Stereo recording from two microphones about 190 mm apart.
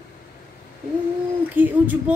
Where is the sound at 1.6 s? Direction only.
10° right (ahead or behind).